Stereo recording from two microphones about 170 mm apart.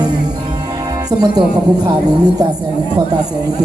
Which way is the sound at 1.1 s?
25° right (ahead or behind).